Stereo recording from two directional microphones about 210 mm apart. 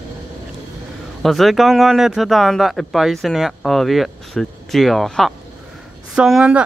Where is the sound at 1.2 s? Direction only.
Centre (ahead or behind).